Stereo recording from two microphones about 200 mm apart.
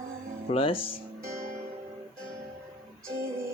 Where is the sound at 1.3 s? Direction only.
15° right (ahead or behind).